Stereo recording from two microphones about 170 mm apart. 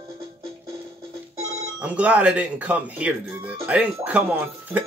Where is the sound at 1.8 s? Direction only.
5° right (ahead or behind).